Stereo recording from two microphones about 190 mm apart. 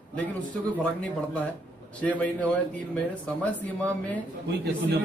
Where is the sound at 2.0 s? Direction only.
10° left (ahead or behind).